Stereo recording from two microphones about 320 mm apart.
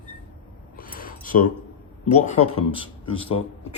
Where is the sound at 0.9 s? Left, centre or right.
Left.